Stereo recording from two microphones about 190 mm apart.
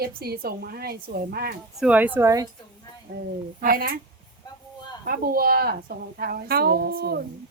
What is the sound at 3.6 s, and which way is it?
Speech, 50° right (ahead or behind).